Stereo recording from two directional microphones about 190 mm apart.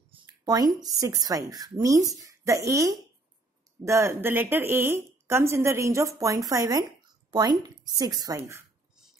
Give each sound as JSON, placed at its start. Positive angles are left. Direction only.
{"t": 0.1, "sound": "speech", "side_deg": -20}